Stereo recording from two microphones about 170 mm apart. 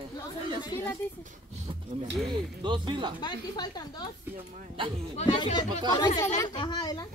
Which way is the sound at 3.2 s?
25° left (ahead or behind).